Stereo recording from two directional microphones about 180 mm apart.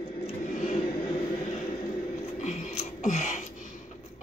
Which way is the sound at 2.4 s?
45° left (ahead or behind).